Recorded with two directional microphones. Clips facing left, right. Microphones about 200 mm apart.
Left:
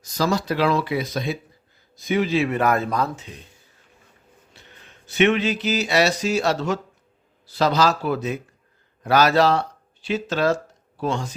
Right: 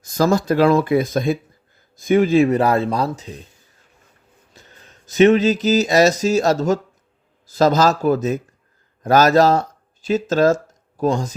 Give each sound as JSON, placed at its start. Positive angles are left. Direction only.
{"t": 0.0, "sound": "speech", "side_deg": -50}
{"t": 4.5, "sound": "a sound", "side_deg": -40}
{"t": 7.4, "sound": "speech", "side_deg": -45}